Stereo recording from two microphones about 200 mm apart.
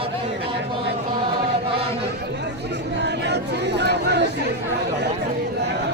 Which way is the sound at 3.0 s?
60° right (ahead or behind).